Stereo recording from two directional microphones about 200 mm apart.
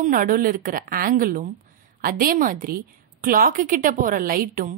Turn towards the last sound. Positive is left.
turn(degrees=-45)  # may be behind; listen again after turning